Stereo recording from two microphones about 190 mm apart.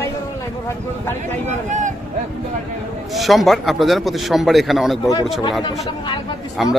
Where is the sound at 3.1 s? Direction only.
Centre (ahead or behind).